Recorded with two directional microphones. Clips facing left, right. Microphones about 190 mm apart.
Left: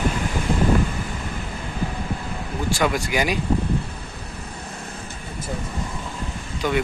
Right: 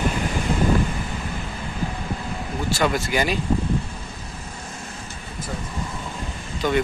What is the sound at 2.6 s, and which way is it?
Speech, 15° left (ahead or behind).